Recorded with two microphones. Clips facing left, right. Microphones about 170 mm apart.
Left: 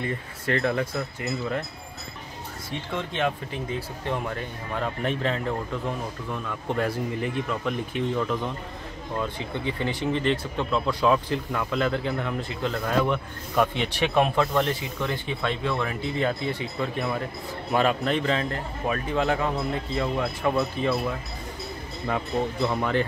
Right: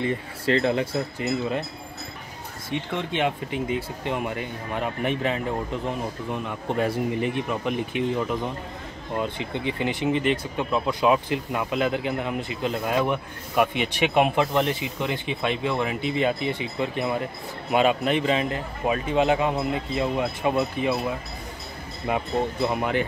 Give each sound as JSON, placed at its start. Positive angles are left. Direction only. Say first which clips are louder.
{"t": 0.0, "sound": "speech", "louder": "right 4 dB", "side_deg": -20}
{"t": 3.1, "sound": "speech", "louder": "right 2 dB", "side_deg": -20}
{"t": 22.0, "sound": "speech", "louder": "right 2 dB", "side_deg": -15}